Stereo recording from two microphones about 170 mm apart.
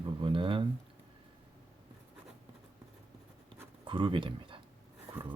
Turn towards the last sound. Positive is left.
turn(degrees=-35)  # may be behind; listen again after turning